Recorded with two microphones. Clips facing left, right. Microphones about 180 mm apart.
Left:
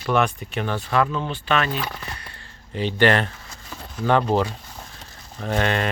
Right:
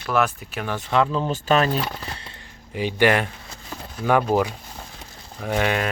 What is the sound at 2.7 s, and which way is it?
Speech, 10° right (ahead or behind).